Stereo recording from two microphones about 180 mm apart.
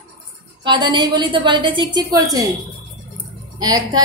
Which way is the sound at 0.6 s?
25° right (ahead or behind).